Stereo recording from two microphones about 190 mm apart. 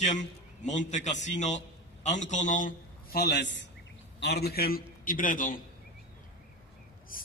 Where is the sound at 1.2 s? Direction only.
40° left (ahead or behind).